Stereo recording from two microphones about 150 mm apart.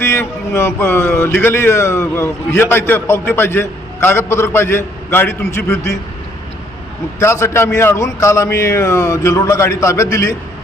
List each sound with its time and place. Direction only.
0.0 s a man's voice: 15° left (ahead or behind)
7.2 s a man's voice: 20° left (ahead or behind)